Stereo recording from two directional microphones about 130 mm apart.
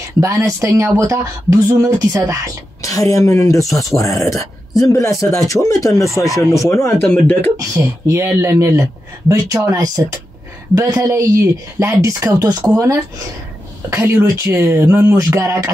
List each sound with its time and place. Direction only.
0.2 s speech: 20° right (ahead or behind)
2.8 s speech: 25° left (ahead or behind)
7.5 s speech: 20° right (ahead or behind)